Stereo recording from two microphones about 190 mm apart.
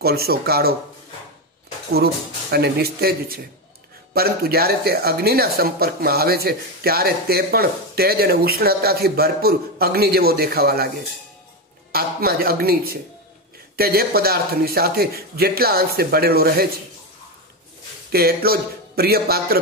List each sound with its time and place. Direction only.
0.0 s speech: 55° right (ahead or behind)
2.5 s speech: 55° right (ahead or behind)
11.9 s a man's voice: 55° right (ahead or behind)
18.1 s speech: 55° right (ahead or behind)